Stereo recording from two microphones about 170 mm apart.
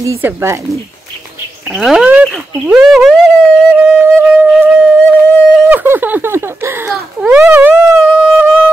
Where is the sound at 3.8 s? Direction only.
10° right (ahead or behind).